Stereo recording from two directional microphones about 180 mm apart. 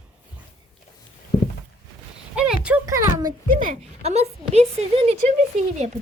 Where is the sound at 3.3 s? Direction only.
50° right (ahead or behind).